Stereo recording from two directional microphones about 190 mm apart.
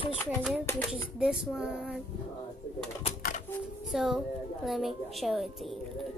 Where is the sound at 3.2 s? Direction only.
45° left (ahead or behind).